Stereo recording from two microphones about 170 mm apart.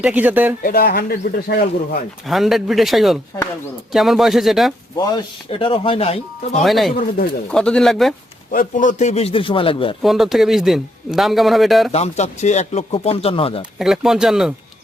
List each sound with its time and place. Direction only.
0.0 s speech: 10° right (ahead or behind)
0.6 s speech: 60° left (ahead or behind)
2.2 s a man's voice: centre (ahead or behind)
5.5 s speech: 30° left (ahead or behind)
6.6 s a man's voice: centre (ahead or behind)
8.5 s speech: 50° left (ahead or behind); by 9.9 s 30° left (ahead or behind)
10.0 s a man's voice: centre (ahead or behind)
11.9 s speech: 40° left (ahead or behind)
13.7 s a man's voice: centre (ahead or behind)